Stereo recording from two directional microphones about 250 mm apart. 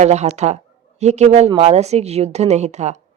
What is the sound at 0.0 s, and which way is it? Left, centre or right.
A woman's voice, right.